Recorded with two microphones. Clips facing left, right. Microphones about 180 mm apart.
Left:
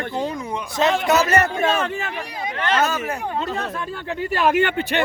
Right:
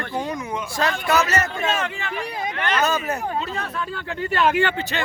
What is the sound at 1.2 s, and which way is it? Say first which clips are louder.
Speech: left 5 dB; 55° left (ahead or behind).